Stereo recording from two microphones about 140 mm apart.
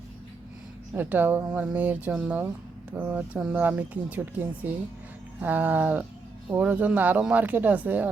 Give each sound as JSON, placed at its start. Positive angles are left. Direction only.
{"t": 0.9, "sound": "speech", "side_deg": -15}
{"t": 5.4, "sound": "speech", "side_deg": -10}